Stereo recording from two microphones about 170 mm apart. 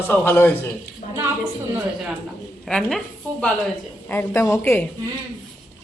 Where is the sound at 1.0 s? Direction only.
50° left (ahead or behind).